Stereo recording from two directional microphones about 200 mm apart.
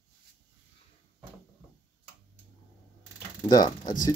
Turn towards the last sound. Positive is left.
turn(degrees=20)  # may be behind; listen again after turning